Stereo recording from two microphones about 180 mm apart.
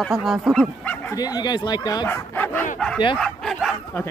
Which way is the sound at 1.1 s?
20° left (ahead or behind).